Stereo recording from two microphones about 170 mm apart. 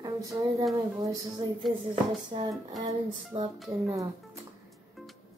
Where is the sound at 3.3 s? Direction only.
35° right (ahead or behind).